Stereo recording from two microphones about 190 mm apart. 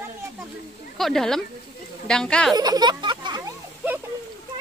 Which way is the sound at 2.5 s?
20° right (ahead or behind).